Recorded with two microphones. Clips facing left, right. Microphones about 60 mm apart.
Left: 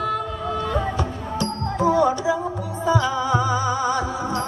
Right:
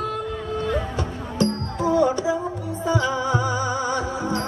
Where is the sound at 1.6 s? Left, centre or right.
Left.